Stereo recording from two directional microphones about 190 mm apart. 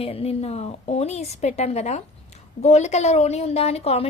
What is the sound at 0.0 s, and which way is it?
A woman's voice, 30° left (ahead or behind).